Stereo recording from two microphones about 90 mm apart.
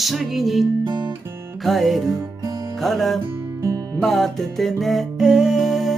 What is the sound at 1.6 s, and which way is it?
Music, centre (ahead or behind).